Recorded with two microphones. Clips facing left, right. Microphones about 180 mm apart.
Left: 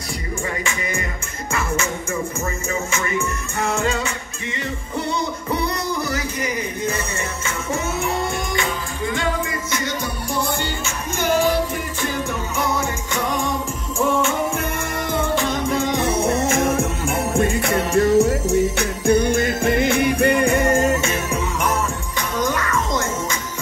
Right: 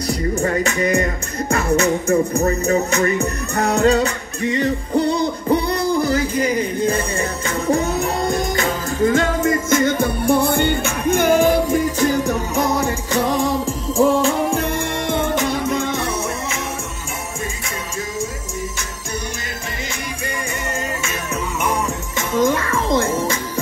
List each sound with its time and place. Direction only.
0.4 s music: 40° right (ahead or behind)
15.0 s music: 20° right (ahead or behind)
15.9 s music: 20° left (ahead or behind)
16.3 s music: 50° left (ahead or behind)
17.4 s music: 65° left (ahead or behind)
22.3 s music: 25° right (ahead or behind)